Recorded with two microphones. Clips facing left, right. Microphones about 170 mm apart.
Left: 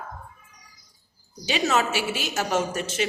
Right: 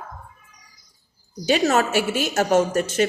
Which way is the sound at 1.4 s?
45° right (ahead or behind).